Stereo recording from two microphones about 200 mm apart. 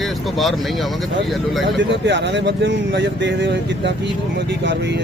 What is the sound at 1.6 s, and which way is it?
Speech, 65° right (ahead or behind).